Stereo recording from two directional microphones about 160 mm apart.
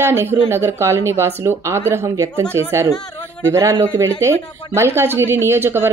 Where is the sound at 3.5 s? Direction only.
15° right (ahead or behind).